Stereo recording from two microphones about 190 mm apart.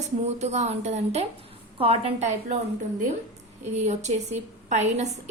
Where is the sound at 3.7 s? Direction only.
35° right (ahead or behind).